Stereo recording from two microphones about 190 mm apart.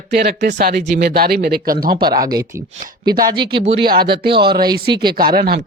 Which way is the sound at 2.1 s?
20° right (ahead or behind).